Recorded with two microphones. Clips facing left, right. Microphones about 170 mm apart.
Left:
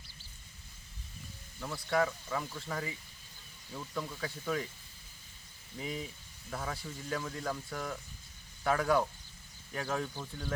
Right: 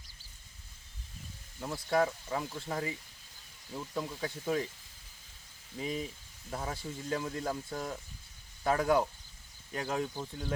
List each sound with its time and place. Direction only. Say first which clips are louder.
1.5 s speech: right 2 dB; 20° right (ahead or behind)
5.8 s speech: right 3 dB; 20° right (ahead or behind)